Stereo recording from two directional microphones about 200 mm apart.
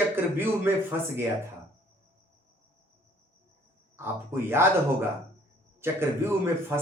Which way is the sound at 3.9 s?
10° right (ahead or behind).